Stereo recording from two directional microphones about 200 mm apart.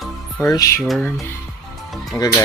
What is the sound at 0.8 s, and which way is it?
Speech, centre (ahead or behind).